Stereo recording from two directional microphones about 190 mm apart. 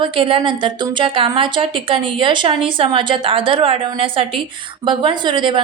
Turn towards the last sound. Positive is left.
turn(degrees=-25)  # may be behind; listen again after turning